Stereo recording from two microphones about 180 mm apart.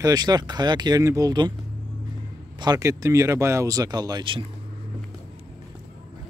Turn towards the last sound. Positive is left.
turn(degrees=-25)  # may be behind; listen again after turning